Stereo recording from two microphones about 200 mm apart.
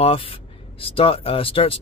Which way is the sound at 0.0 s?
25° left (ahead or behind).